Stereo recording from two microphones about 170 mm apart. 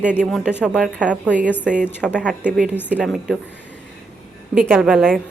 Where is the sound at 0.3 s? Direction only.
5° left (ahead or behind).